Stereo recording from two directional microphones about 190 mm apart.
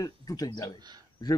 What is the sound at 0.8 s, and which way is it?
Speech, 20° right (ahead or behind).